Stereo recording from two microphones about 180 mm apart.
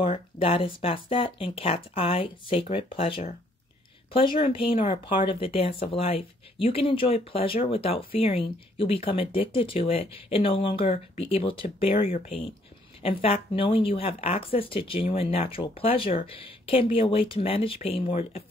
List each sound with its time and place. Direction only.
0.1 s speech: 30° left (ahead or behind)
13.0 s speech: 30° left (ahead or behind)